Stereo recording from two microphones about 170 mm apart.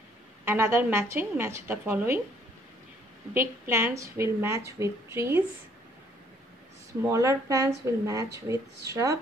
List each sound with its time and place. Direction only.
0.5 s a woman's voice: 15° right (ahead or behind)
3.3 s a woman's voice: 15° right (ahead or behind)
7.1 s speech: 20° right (ahead or behind)